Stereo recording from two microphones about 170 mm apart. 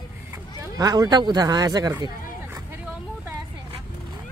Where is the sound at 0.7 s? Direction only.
20° right (ahead or behind).